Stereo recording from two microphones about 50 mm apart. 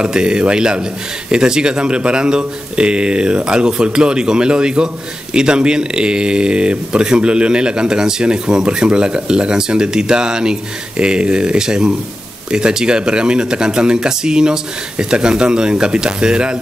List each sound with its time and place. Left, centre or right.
0.0 s speech: centre